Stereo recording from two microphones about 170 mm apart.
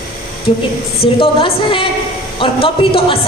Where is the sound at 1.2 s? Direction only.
30° left (ahead or behind).